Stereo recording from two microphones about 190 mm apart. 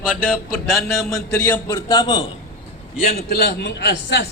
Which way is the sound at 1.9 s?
25° left (ahead or behind).